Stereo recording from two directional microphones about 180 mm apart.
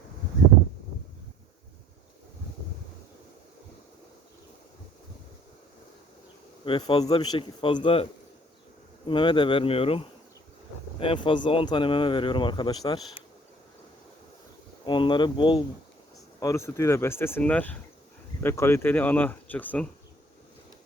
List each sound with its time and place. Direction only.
6.7 s speech: 25° left (ahead or behind)
9.0 s speech: 25° left (ahead or behind)
14.8 s speech: 25° left (ahead or behind)
16.4 s speech: 15° left (ahead or behind)